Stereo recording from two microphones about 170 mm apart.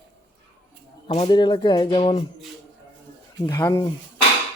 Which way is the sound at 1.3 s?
25° left (ahead or behind).